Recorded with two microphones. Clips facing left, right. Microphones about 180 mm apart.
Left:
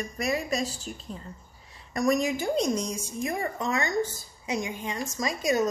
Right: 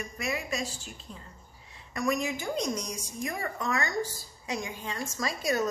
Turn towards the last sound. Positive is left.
turn(degrees=20)  # may be behind; listen again after turning